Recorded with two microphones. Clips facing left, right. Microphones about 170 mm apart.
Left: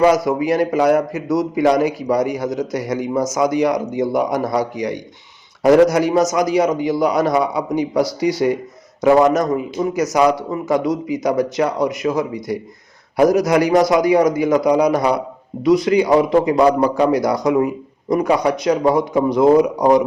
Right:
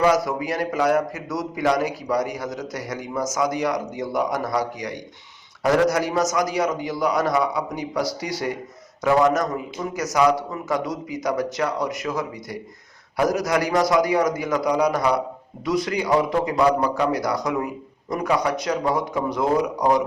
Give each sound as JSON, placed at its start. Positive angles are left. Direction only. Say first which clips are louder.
{"t": 0.0, "sound": "a man's voice", "louder": "left 5 dB", "side_deg": 15}
{"t": 16.6, "sound": "a man's voice", "louder": "left 5 dB", "side_deg": 30}
{"t": 17.1, "sound": "a man's voice", "louder": "left 7 dB", "side_deg": 20}